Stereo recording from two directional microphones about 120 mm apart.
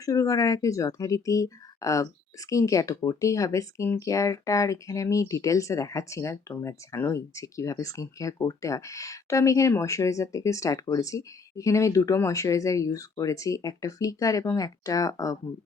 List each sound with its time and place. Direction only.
0.0 s speech: 30° left (ahead or behind)